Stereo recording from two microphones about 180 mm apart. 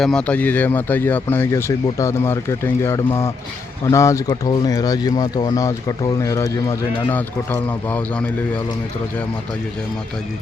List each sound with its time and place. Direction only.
0.0 s speech: 5° left (ahead or behind)